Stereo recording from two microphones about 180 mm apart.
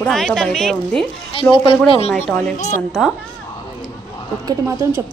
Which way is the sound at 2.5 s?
40° left (ahead or behind).